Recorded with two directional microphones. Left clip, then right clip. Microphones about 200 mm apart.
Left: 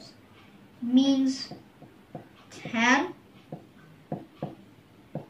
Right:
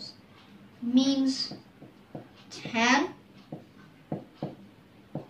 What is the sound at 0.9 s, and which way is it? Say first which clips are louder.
Speech: left 2 dB; 15° left (ahead or behind).